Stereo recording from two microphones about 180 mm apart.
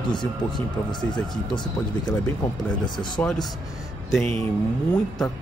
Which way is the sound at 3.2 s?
10° left (ahead or behind).